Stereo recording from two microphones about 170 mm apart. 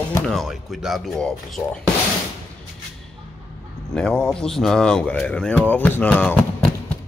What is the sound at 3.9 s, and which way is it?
Speech, 5° left (ahead or behind).